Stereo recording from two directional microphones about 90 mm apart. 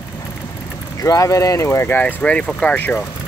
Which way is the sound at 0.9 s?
40° left (ahead or behind).